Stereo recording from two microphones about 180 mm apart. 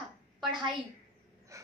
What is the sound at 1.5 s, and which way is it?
Breathing, 15° right (ahead or behind).